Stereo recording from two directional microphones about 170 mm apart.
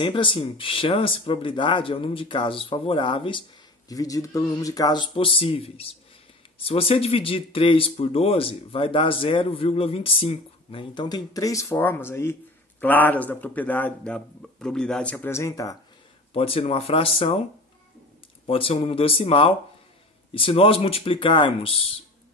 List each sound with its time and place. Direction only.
0.0 s speech: 30° left (ahead or behind)
16.3 s speech: 35° left (ahead or behind)
18.5 s speech: 35° left (ahead or behind)